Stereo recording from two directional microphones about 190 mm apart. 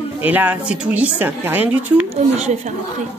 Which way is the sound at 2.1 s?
35° right (ahead or behind).